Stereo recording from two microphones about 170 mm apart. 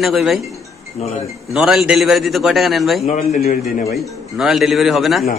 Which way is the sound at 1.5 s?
5° right (ahead or behind).